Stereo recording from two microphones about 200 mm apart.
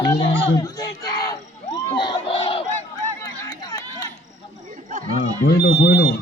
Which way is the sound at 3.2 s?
20° left (ahead or behind).